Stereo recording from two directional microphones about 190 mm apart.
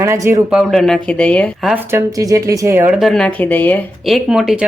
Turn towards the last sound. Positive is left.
turn(degrees=0)  # may be behind; listen again after turning